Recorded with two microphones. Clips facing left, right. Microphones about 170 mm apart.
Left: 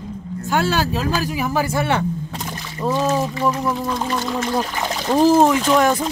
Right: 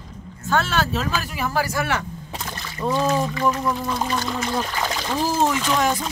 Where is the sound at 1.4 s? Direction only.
15° left (ahead or behind).